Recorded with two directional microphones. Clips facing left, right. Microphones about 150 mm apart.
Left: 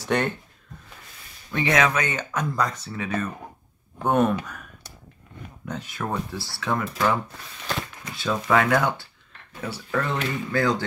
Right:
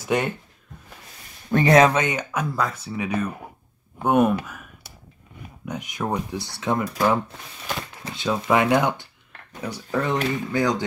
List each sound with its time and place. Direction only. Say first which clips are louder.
0.0 s speech: right 1 dB; 10° right (ahead or behind)
1.5 s speech: right 7 dB; 40° right (ahead or behind)
2.0 s speech: right 3 dB; 15° right (ahead or behind)